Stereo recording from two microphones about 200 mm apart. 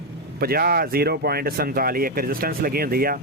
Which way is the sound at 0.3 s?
50° right (ahead or behind).